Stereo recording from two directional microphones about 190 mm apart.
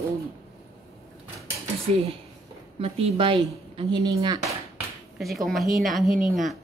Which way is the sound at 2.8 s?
30° right (ahead or behind).